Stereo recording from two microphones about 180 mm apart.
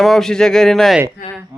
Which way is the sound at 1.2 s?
55° left (ahead or behind).